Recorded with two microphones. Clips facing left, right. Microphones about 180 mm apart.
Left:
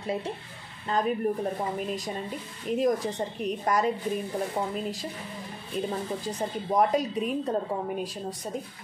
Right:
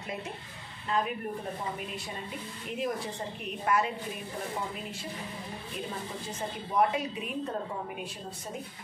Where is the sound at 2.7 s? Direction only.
40° left (ahead or behind).